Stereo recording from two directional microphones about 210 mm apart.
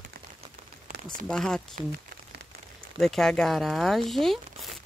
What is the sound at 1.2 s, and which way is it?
Speech, centre (ahead or behind).